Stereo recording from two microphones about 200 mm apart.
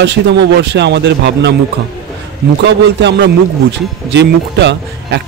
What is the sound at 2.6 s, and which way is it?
Speech, 60° right (ahead or behind).